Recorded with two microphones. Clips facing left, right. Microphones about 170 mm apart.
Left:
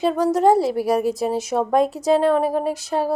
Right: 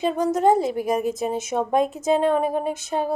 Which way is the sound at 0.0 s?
35° left (ahead or behind).